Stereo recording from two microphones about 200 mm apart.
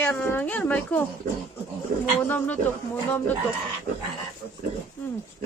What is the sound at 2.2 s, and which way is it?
Speech, 10° left (ahead or behind).